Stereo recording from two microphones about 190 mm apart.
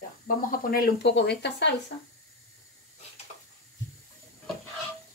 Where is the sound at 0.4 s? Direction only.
50° left (ahead or behind).